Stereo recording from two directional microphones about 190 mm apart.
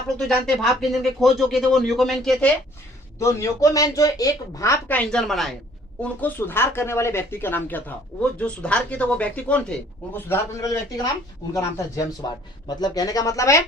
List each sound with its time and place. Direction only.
0.2 s speech: centre (ahead or behind)
3.2 s speech: 15° left (ahead or behind)